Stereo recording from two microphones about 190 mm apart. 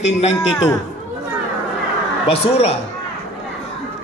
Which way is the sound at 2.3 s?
35° left (ahead or behind).